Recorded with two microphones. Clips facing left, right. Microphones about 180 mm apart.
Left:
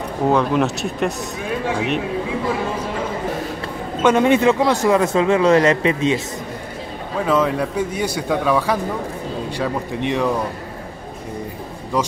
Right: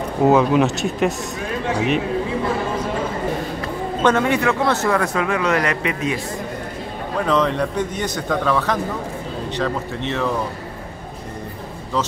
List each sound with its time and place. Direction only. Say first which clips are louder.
0.3 s speech: right 2 dB; 5° right (ahead or behind)
4.0 s speech: left 4 dB; 15° left (ahead or behind)
7.2 s speech: left 1 dB; 5° left (ahead or behind)